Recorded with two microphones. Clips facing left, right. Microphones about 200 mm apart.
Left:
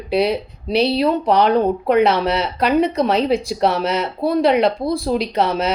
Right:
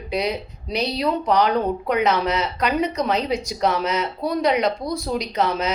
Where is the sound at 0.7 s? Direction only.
60° left (ahead or behind).